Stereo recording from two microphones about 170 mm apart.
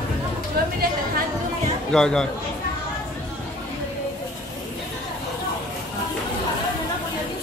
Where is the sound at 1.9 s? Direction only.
5° left (ahead or behind).